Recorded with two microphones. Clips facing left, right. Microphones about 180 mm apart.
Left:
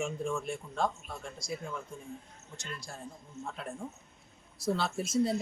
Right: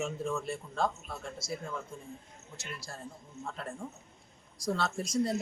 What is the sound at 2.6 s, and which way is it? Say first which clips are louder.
Speech: even; centre (ahead or behind).